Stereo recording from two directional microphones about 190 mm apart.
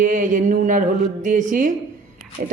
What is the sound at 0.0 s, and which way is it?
A man's voice, 45° right (ahead or behind).